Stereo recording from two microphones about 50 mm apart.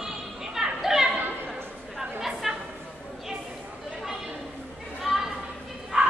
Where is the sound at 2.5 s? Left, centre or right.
Centre.